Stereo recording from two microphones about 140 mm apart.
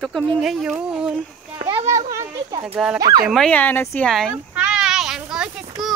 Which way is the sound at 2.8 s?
Centre (ahead or behind).